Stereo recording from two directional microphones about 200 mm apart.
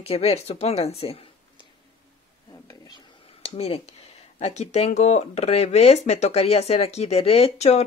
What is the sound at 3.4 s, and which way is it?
Speech, 30° left (ahead or behind).